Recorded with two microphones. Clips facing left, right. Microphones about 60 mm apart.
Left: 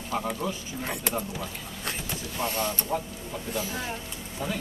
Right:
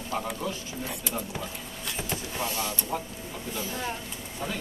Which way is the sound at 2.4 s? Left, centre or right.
Left.